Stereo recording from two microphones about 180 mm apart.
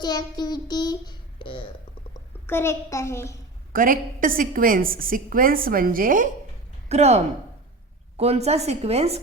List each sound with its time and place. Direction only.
0.0 s a child's voice: 25° left (ahead or behind)
2.5 s a child's voice: 15° left (ahead or behind)
3.7 s a woman's voice: 50° right (ahead or behind)
6.8 s a woman's voice: 40° right (ahead or behind)